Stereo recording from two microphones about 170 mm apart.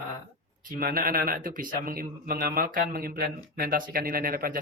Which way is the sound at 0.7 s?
60° right (ahead or behind).